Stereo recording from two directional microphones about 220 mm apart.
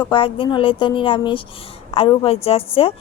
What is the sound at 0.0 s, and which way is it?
A woman's voice, 25° left (ahead or behind).